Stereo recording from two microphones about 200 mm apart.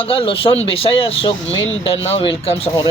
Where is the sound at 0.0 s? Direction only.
25° left (ahead or behind).